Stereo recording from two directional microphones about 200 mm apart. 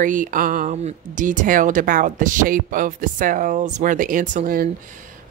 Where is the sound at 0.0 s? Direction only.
40° right (ahead or behind).